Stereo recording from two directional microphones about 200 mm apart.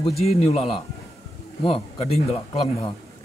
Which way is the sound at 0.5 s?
30° left (ahead or behind).